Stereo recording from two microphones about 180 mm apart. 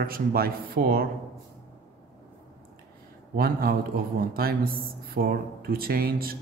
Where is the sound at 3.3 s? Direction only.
55° right (ahead or behind).